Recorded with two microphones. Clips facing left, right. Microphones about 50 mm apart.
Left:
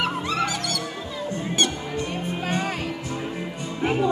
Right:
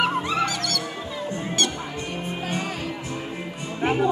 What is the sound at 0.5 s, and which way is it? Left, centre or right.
Music, centre.